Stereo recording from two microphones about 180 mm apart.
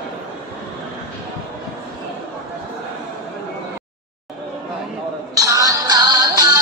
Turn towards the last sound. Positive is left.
turn(degrees=-20)  # may be behind; listen again after turning